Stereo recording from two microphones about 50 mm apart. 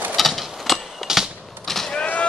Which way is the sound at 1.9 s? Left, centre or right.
Left.